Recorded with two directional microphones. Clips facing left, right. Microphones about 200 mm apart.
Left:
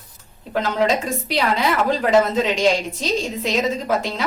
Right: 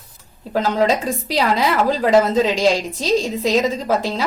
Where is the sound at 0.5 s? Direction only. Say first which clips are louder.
Right 2 dB; 35° right (ahead or behind).